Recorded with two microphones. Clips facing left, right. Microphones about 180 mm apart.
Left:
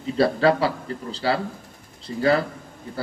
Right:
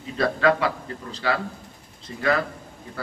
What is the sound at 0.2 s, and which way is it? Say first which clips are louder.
A man's voice: left 2 dB; 30° left (ahead or behind).